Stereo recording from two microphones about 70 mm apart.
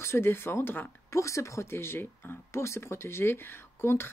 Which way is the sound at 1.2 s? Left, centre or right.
Left.